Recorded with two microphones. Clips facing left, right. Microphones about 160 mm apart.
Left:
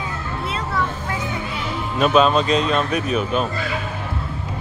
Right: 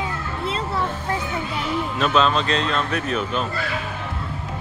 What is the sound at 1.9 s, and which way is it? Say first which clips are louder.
Speech: left 5 dB; 15° left (ahead or behind).